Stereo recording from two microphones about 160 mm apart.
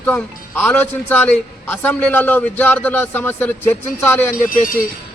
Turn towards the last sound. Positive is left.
turn(degrees=60)  # may be behind; listen again after turning